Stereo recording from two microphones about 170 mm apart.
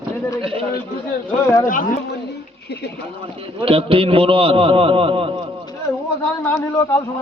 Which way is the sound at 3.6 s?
35° right (ahead or behind).